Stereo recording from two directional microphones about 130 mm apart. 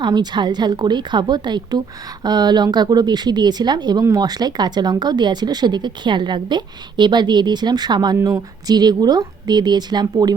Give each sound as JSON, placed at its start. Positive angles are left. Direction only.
{"t": 0.0, "sound": "speech", "side_deg": -35}